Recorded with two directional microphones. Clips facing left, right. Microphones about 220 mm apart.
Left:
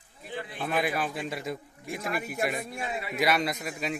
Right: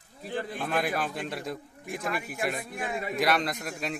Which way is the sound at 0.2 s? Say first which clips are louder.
Right 4 dB; 45° right (ahead or behind).